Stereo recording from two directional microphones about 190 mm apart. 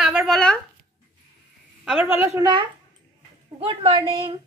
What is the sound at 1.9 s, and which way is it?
Speech, 10° right (ahead or behind).